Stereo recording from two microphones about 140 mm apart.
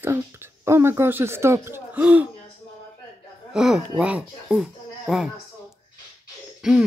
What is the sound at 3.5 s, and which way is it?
Speech, 5° right (ahead or behind).